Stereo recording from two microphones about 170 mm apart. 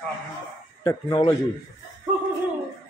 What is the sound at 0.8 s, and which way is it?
Speech, 20° left (ahead or behind).